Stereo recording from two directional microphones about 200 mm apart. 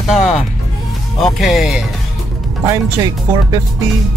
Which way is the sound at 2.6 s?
15° right (ahead or behind).